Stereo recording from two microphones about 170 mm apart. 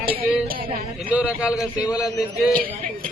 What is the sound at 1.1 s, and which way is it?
Speech, 10° right (ahead or behind).